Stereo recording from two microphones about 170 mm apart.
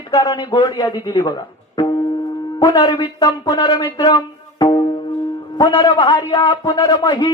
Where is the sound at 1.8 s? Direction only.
25° left (ahead or behind).